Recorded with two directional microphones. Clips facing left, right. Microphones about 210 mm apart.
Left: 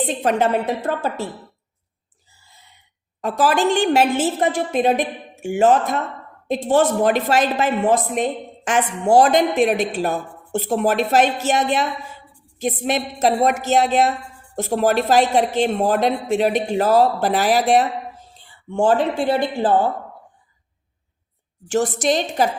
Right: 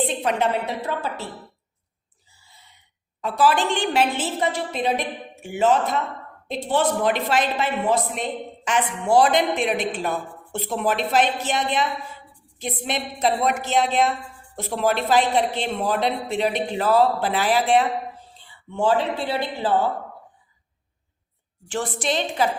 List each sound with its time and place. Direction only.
0.2 s a woman's voice: 45° left (ahead or behind)
3.2 s a woman's voice: 45° left (ahead or behind)
21.7 s a woman's voice: 45° left (ahead or behind)